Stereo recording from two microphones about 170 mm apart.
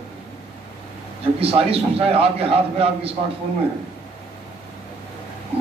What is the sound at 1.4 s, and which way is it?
A man's voice, 35° right (ahead or behind).